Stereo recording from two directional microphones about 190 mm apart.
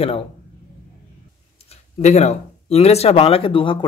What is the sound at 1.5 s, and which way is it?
Speech, 35° left (ahead or behind).